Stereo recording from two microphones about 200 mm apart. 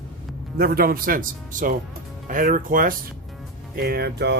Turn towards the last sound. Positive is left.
turn(degrees=-55)  # may be behind; listen again after turning